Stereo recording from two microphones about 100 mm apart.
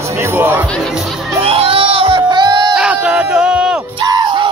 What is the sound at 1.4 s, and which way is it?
Music, 70° right (ahead or behind).